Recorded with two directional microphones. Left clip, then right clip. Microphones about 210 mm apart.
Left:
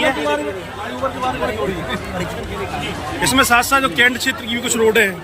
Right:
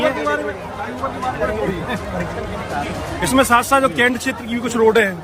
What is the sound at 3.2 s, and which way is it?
Speech, 15° right (ahead or behind).